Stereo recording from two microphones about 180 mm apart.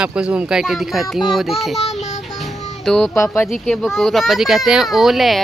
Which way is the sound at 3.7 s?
Centre (ahead or behind).